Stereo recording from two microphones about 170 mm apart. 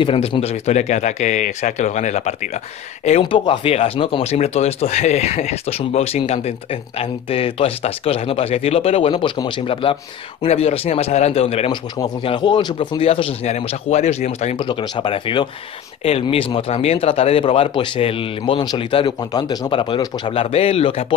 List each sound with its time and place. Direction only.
0.0 s speech: 30° left (ahead or behind)
3.1 s speech: 30° left (ahead or behind)
14.6 s speech: 25° left (ahead or behind)